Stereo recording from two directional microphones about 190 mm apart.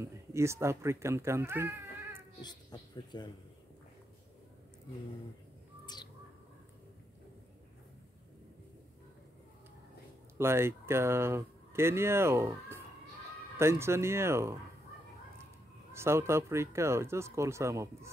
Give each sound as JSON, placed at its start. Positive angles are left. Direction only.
{"t": 0.0, "sound": "speech", "side_deg": -15}
{"t": 2.4, "sound": "speech", "side_deg": 20}
{"t": 10.3, "sound": "speech", "side_deg": -15}
{"t": 15.9, "sound": "speech", "side_deg": -15}